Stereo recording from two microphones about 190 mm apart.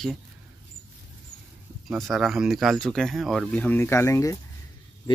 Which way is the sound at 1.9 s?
Centre (ahead or behind).